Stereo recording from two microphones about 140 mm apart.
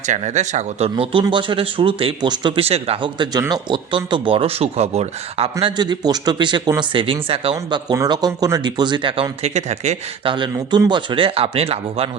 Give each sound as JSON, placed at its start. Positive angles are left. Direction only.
{"t": 0.0, "sound": "speech", "side_deg": -55}
{"t": 5.7, "sound": "speech", "side_deg": -30}
{"t": 7.9, "sound": "speech", "side_deg": -30}
{"t": 10.2, "sound": "speech", "side_deg": -35}